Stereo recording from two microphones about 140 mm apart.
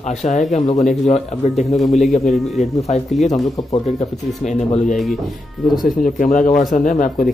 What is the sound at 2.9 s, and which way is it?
Speech, 55° left (ahead or behind).